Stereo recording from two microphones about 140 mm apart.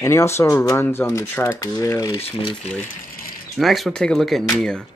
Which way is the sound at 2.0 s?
40° left (ahead or behind).